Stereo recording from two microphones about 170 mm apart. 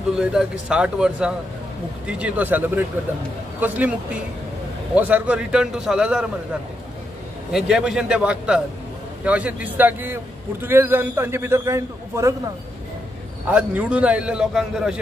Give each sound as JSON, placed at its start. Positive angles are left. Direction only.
{"t": 0.1, "sound": "a man's voice", "side_deg": -5}
{"t": 7.5, "sound": "a man's voice", "side_deg": -5}
{"t": 13.5, "sound": "a man's voice", "side_deg": -5}